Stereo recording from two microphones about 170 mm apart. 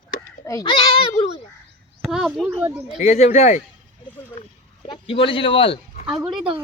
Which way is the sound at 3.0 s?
40° left (ahead or behind).